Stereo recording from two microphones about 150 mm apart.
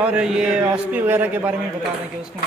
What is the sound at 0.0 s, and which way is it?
A man's voice, 5° right (ahead or behind).